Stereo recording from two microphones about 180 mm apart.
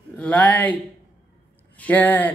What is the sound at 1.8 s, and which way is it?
Speech, 10° left (ahead or behind).